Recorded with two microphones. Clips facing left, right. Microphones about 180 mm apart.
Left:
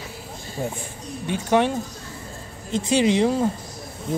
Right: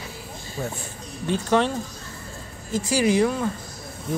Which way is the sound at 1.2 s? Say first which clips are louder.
Left 1 dB; 15° left (ahead or behind).